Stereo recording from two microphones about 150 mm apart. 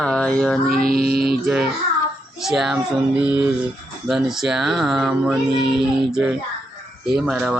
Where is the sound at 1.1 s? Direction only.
90° right.